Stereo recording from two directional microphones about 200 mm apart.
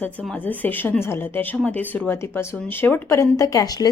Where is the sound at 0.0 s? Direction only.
10° left (ahead or behind).